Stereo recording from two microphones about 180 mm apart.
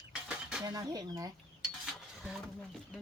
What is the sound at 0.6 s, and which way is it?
Speech, 20° right (ahead or behind).